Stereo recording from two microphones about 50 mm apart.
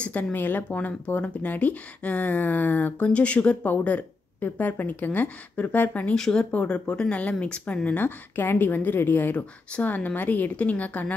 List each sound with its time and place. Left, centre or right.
0.0 s speech: left
6.1 s speech: centre
6.5 s speech: left
8.4 s speech: left